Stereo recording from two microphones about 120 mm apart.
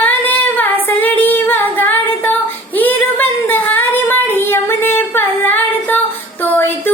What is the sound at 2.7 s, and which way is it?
Female singing, 15° left (ahead or behind).